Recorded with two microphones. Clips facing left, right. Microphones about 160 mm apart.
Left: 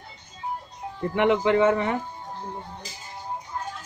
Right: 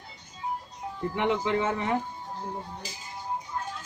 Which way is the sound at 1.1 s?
70° left (ahead or behind).